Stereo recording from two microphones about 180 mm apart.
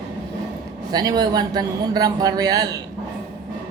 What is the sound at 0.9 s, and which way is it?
A man's voice, 20° right (ahead or behind).